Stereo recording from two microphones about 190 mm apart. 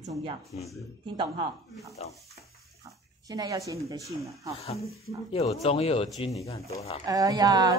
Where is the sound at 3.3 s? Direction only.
20° right (ahead or behind).